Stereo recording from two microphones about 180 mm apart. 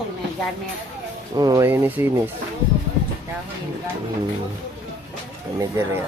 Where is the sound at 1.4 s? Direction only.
20° right (ahead or behind).